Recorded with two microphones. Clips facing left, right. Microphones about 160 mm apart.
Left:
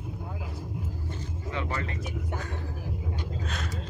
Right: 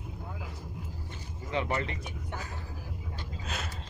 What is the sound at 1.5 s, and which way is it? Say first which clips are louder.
Speech: right 3 dB; 25° right (ahead or behind).